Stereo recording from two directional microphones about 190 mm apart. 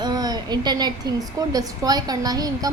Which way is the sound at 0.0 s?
20° right (ahead or behind).